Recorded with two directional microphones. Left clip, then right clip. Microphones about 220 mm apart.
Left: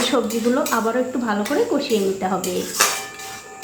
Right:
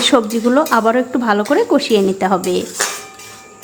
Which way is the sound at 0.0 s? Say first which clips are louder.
Right 6 dB; 40° right (ahead or behind).